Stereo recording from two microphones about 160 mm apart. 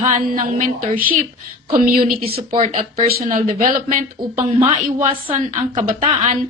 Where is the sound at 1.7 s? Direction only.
60° right (ahead or behind).